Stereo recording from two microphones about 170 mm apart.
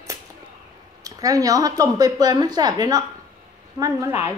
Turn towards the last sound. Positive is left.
turn(degrees=-15)  # may be behind; listen again after turning